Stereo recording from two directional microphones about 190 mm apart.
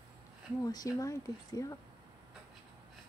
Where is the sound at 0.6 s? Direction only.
20° left (ahead or behind).